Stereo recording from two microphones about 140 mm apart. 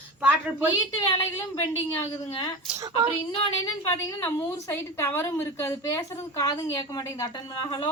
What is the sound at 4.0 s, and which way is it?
A woman's voice, 20° left (ahead or behind).